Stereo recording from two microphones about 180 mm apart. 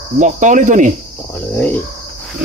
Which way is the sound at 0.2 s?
45° right (ahead or behind).